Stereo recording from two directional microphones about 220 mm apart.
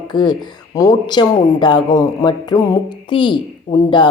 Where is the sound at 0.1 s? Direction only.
20° left (ahead or behind).